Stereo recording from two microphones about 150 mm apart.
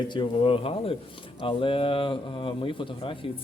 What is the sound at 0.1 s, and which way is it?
Speech, 35° left (ahead or behind).